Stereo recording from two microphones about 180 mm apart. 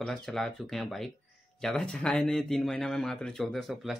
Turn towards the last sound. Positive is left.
turn(degrees=0)  # may be behind; listen again after turning